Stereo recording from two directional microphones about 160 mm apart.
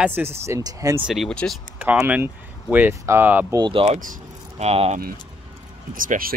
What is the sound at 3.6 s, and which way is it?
Speech, 30° right (ahead or behind).